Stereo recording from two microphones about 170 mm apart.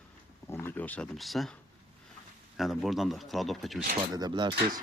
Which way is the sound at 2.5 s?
Centre (ahead or behind).